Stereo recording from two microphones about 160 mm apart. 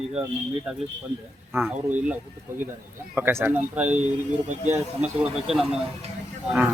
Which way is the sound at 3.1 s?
15° right (ahead or behind).